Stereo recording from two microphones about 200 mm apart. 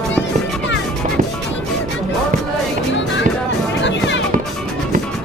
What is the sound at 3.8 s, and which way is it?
Music, 65° left (ahead or behind).